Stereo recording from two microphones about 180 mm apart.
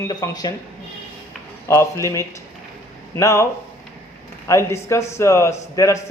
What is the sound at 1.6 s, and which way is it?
A man's voice, 15° left (ahead or behind).